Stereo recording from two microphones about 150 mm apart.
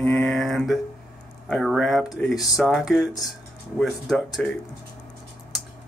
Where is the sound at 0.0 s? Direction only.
5° left (ahead or behind).